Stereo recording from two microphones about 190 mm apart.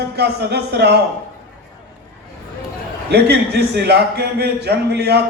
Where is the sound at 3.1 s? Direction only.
60° right (ahead or behind).